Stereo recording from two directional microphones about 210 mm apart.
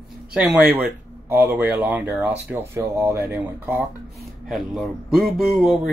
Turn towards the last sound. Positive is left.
turn(degrees=0)  # may be behind; listen again after turning